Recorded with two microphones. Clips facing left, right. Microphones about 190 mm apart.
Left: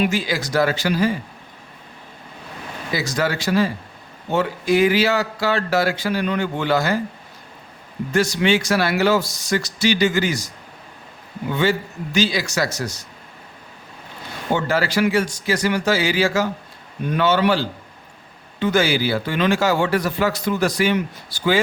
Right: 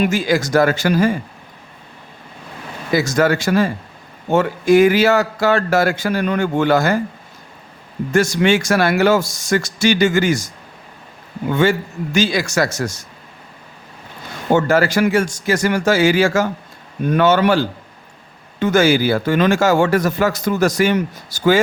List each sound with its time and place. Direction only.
0.0 s speech: 45° right (ahead or behind)
2.9 s speech: 50° right (ahead or behind)
8.1 s speech: 50° right (ahead or behind)
14.5 s speech: 45° right (ahead or behind)